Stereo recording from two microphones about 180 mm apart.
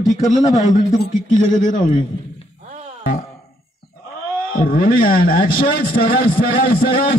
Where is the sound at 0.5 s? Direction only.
40° left (ahead or behind).